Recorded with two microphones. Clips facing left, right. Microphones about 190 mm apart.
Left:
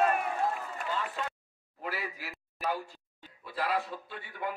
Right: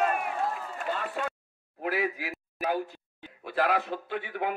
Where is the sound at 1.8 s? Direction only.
55° right (ahead or behind).